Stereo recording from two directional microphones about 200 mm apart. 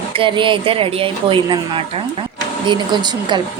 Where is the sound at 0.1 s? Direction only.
25° right (ahead or behind).